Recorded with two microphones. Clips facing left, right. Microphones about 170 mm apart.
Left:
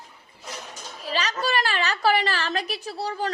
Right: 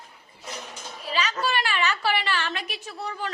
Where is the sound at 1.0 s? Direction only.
40° left (ahead or behind).